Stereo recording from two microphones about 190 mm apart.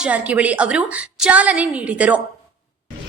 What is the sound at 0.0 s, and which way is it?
A woman's voice, 5° right (ahead or behind).